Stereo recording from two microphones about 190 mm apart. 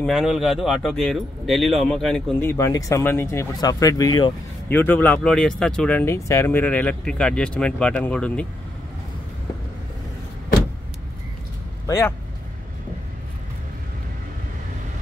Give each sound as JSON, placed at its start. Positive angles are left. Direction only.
{"t": 0.0, "sound": "speech", "side_deg": 0}
{"t": 2.5, "sound": "speech", "side_deg": 15}
{"t": 4.6, "sound": "speech", "side_deg": 10}